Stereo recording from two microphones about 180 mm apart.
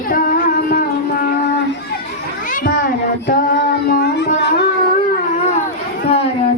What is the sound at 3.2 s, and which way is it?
Child singing, 50° left (ahead or behind).